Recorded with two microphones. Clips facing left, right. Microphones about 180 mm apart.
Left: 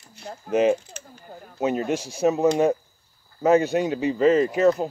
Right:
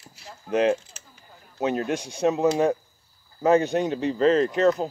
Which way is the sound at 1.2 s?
50° left (ahead or behind).